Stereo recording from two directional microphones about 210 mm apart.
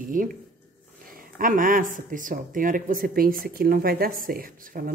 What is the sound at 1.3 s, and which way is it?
A woman's voice, 40° right (ahead or behind).